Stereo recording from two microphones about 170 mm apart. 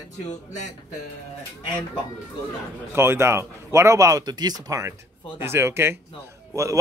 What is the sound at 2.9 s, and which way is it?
A man's voice, 15° right (ahead or behind).